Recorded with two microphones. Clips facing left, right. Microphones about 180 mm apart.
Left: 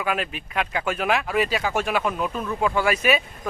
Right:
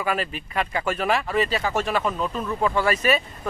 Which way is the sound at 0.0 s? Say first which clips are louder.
Even; 5° left (ahead or behind).